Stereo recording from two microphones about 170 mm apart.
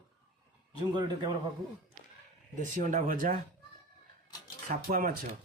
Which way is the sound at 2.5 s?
50° right (ahead or behind).